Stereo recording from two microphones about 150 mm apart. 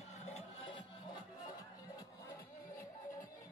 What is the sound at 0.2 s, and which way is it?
Music, 45° left (ahead or behind).